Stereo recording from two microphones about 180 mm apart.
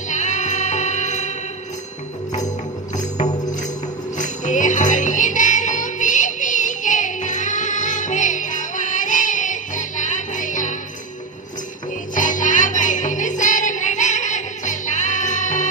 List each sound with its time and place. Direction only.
0.1 s music: 40° left (ahead or behind)
4.2 s music: 45° left (ahead or behind)
12.1 s music: 45° left (ahead or behind)